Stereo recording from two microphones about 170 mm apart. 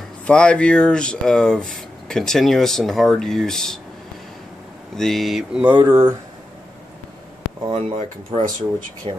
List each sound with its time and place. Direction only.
0.3 s speech: 5° left (ahead or behind)
4.9 s speech: centre (ahead or behind)
5.8 s speech: 15° right (ahead or behind)
7.7 s speech: 35° right (ahead or behind)